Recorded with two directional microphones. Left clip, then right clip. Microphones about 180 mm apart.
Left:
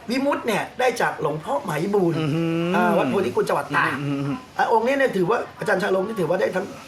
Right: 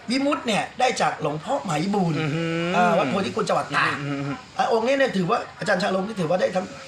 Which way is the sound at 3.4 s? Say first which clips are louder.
Left 1 dB; 10° left (ahead or behind).